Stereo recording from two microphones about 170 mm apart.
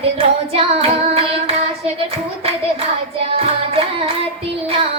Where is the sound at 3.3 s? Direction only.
35° right (ahead or behind).